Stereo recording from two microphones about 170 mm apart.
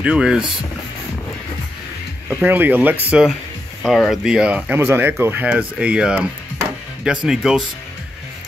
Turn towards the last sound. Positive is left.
turn(degrees=-5)  # may be behind; listen again after turning